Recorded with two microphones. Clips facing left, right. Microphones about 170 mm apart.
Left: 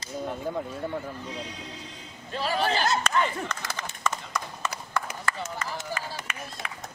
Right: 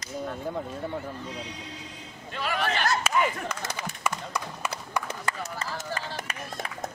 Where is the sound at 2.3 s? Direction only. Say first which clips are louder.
Left 2 dB; 35° left (ahead or behind).